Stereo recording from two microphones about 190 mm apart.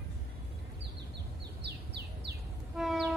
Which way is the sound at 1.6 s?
60° right (ahead or behind).